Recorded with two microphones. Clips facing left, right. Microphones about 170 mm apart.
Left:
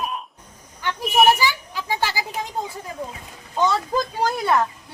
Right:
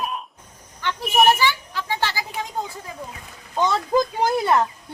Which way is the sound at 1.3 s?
10° left (ahead or behind).